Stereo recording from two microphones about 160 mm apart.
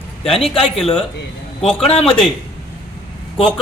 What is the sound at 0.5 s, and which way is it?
Speech, 40° left (ahead or behind).